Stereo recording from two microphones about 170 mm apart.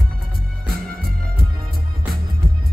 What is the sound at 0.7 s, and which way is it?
Music, 60° right (ahead or behind).